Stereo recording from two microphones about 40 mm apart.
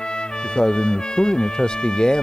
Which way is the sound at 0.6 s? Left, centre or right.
Centre.